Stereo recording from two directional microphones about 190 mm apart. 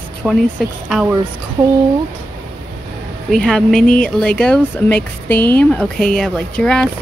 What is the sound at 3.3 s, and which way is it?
Speech, centre (ahead or behind).